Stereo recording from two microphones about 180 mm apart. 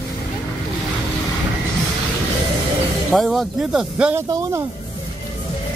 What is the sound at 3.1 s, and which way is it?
Speech, centre (ahead or behind).